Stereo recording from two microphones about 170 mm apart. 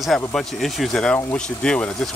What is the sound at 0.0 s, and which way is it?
Speech, centre (ahead or behind).